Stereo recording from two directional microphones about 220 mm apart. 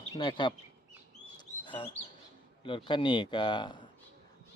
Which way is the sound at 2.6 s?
20° left (ahead or behind).